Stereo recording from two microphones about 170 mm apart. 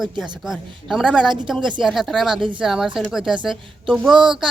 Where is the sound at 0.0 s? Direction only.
Centre (ahead or behind).